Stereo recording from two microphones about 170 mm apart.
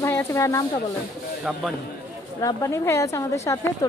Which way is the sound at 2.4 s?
20° left (ahead or behind).